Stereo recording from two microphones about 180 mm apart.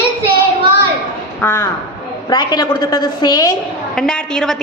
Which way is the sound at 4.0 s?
5° left (ahead or behind).